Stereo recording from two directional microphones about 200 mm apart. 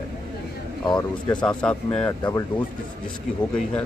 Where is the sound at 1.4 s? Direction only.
5° left (ahead or behind).